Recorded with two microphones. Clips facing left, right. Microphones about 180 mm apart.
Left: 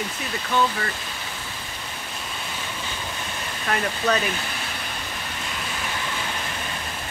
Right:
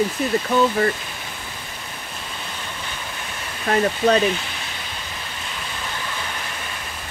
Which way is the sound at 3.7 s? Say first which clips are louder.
Right 6 dB; 30° right (ahead or behind).